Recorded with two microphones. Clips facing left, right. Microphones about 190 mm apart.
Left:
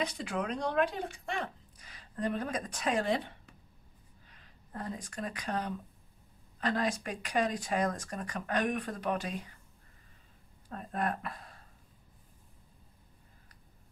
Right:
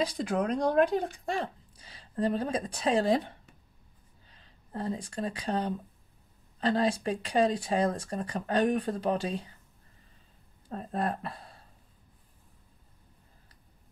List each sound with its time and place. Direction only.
0.0 s speech: 35° right (ahead or behind)
10.7 s speech: 30° right (ahead or behind)